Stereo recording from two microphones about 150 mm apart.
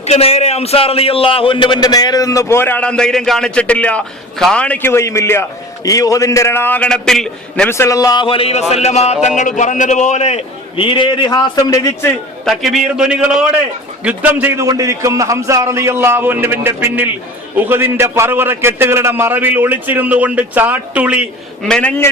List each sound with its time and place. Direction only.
0.0 s a man's voice: 45° left (ahead or behind); by 12.1 s 20° left (ahead or behind)
12.5 s a man's voice: centre (ahead or behind)
21.7 s a man's voice: 10° left (ahead or behind)